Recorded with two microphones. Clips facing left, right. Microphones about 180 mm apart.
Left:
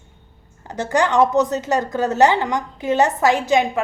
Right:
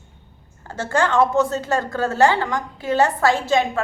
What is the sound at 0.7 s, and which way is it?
A woman's voice, 15° left (ahead or behind).